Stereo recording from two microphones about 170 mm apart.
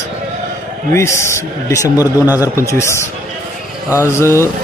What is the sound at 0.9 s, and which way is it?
A man's voice, 15° left (ahead or behind).